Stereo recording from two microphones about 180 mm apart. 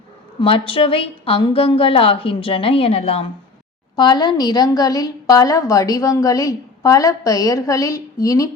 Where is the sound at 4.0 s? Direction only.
25° left (ahead or behind).